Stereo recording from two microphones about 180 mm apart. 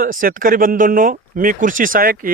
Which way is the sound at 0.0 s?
50° right (ahead or behind).